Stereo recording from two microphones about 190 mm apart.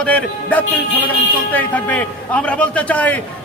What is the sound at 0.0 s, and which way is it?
A man's voice, 5° left (ahead or behind).